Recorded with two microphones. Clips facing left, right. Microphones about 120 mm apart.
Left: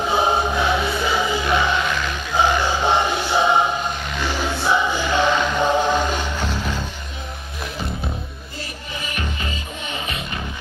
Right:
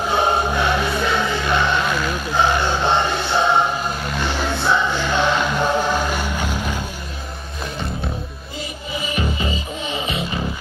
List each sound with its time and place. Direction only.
0.0 s music: centre (ahead or behind)
1.9 s vehicle: 5° right (ahead or behind)
2.6 s music: 10° left (ahead or behind)
3.8 s choir: 5° right (ahead or behind)
4.5 s music: 10° left (ahead or behind)
5.2 s mantra: 10° right (ahead or behind)
5.6 s music: 15° left (ahead or behind)
5.9 s music: 10° right (ahead or behind)
9.0 s music: 20° right (ahead or behind)